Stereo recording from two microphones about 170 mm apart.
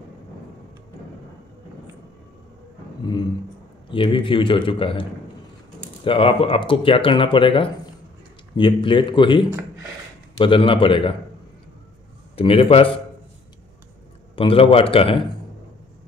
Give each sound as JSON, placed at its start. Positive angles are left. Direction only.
{"t": 3.9, "sound": "speech", "side_deg": 30}
{"t": 6.0, "sound": "speech", "side_deg": 30}
{"t": 12.4, "sound": "speech", "side_deg": 35}
{"t": 14.3, "sound": "speech", "side_deg": 30}